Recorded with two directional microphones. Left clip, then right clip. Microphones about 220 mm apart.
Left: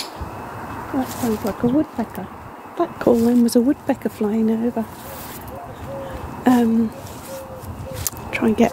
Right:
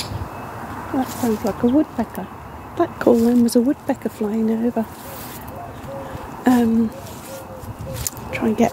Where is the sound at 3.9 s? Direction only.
15° left (ahead or behind).